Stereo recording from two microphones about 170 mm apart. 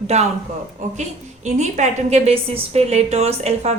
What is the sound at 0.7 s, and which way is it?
A woman's voice, 45° right (ahead or behind).